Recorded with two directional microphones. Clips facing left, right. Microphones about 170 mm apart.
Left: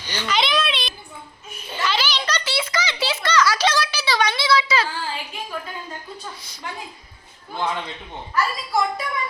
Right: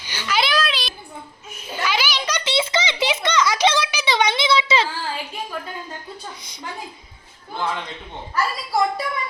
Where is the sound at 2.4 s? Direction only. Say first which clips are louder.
Right 3 dB; 20° right (ahead or behind).